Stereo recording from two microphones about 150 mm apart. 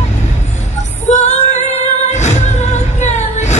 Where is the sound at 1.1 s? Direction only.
50° left (ahead or behind).